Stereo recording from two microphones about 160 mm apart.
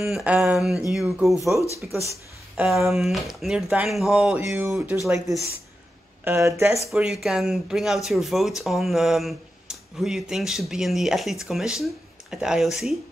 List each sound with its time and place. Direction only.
0.0 s speech: 5° right (ahead or behind)
6.2 s speech: 15° right (ahead or behind)
6.9 s speech: centre (ahead or behind)